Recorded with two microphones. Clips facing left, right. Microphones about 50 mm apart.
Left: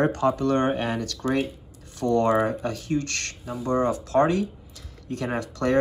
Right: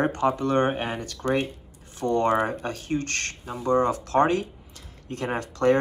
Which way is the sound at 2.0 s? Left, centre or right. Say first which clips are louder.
Left 1 dB; right.